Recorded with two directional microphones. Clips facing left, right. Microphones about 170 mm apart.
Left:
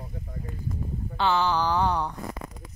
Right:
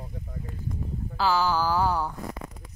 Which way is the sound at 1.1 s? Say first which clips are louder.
Even; centre (ahead or behind).